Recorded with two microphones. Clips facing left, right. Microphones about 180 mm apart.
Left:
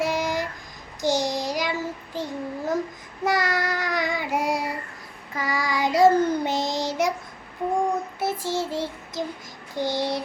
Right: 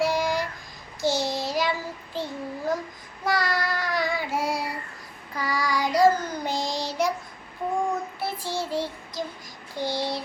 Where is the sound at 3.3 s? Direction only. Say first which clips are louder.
Even; 20° left (ahead or behind).